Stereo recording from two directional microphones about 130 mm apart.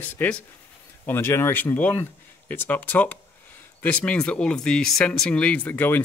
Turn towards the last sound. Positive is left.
turn(degrees=15)  # may be behind; listen again after turning